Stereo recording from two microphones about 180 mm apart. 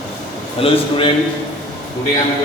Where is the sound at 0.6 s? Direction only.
30° left (ahead or behind).